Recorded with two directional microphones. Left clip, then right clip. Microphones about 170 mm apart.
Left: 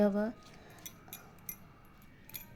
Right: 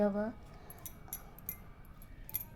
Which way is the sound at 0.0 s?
20° left (ahead or behind).